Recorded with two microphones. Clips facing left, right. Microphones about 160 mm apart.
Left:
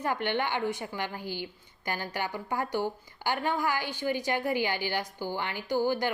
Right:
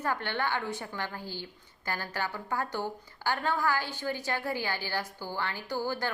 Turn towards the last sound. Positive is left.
turn(degrees=15)  # may be behind; listen again after turning